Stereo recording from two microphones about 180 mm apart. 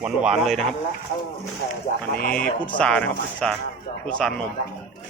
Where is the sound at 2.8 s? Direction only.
5° left (ahead or behind).